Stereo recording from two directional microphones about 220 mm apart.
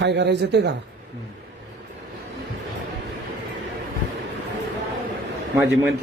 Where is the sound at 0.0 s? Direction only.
50° right (ahead or behind).